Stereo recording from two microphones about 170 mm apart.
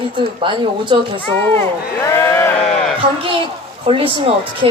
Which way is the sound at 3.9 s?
30° right (ahead or behind).